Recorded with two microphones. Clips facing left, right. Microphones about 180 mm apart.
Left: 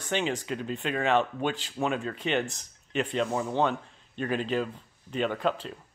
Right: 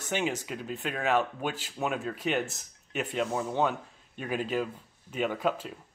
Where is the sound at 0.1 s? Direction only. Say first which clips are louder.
Left 2 dB; 10° right (ahead or behind).